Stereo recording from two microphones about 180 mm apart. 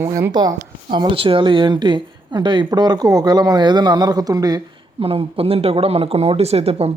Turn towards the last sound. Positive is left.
turn(degrees=-35)  # may be behind; listen again after turning